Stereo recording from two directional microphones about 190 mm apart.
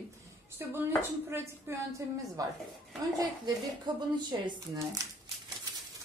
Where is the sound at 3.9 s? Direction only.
25° right (ahead or behind).